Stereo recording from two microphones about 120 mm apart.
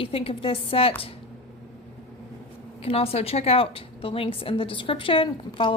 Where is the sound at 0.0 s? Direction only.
50° left (ahead or behind).